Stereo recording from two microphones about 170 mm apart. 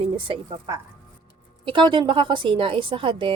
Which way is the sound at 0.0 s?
30° right (ahead or behind).